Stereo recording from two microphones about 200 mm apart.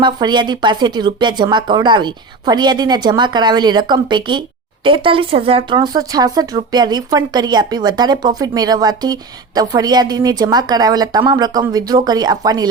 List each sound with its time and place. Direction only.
0.0 s speech: 20° right (ahead or behind)